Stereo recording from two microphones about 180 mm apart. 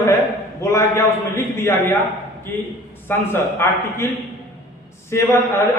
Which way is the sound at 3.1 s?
10° left (ahead or behind).